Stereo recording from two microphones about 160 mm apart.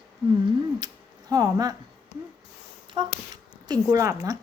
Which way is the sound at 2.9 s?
25° right (ahead or behind).